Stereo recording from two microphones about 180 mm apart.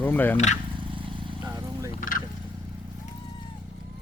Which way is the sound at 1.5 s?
15° right (ahead or behind).